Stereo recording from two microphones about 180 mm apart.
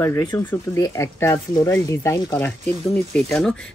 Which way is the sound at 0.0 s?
15° left (ahead or behind).